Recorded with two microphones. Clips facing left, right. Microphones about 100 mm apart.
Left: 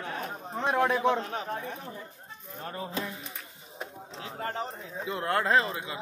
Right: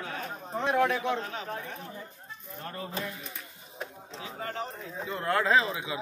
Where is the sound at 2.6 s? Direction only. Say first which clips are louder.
Left 2 dB; 20° left (ahead or behind).